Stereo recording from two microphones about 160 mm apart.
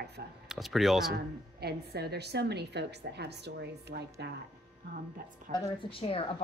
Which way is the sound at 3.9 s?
70° right (ahead or behind).